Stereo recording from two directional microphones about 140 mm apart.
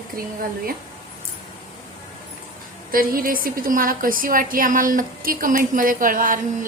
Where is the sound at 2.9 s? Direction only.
90° right.